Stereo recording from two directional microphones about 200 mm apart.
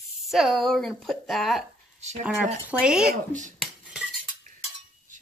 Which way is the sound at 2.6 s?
5° right (ahead or behind).